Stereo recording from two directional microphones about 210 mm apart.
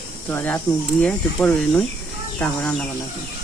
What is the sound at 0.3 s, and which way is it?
Speech, 10° left (ahead or behind).